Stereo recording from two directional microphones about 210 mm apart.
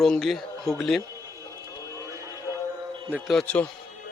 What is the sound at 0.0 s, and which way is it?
A man's voice, centre (ahead or behind).